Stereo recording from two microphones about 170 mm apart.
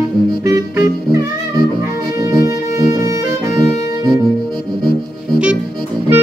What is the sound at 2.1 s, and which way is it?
Music, 20° right (ahead or behind).